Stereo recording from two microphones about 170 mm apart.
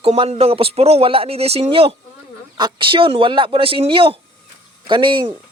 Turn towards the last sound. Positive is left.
turn(degrees=-30)  # may be behind; listen again after turning